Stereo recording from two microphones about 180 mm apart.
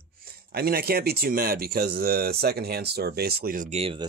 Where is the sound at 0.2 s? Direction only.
60° right (ahead or behind).